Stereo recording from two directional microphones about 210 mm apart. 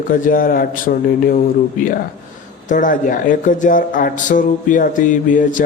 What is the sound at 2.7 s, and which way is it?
Speech, 40° left (ahead or behind).